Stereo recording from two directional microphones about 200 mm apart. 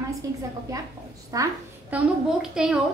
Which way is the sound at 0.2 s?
15° right (ahead or behind).